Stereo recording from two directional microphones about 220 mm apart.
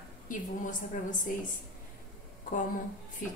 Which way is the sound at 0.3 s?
35° left (ahead or behind).